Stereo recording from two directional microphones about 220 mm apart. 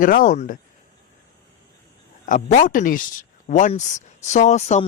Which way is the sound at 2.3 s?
35° left (ahead or behind).